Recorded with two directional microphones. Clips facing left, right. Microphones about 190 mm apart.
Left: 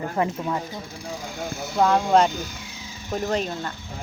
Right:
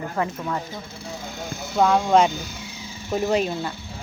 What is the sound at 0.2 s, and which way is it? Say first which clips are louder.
Speech: left 1 dB; 20° left (ahead or behind).